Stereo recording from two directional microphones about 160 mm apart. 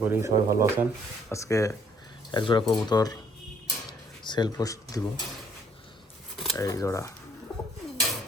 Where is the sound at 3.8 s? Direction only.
25° left (ahead or behind).